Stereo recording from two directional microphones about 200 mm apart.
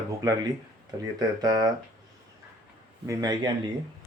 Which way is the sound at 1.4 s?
15° right (ahead or behind).